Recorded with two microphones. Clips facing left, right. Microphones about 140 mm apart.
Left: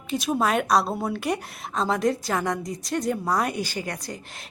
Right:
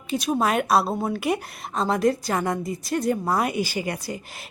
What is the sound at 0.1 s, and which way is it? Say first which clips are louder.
A woman's voice: right 1 dB; centre (ahead or behind).